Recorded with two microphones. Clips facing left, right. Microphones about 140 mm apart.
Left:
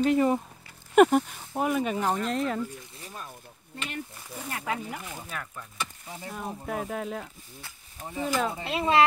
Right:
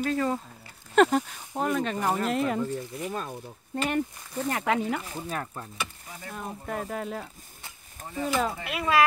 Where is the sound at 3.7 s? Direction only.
50° right (ahead or behind).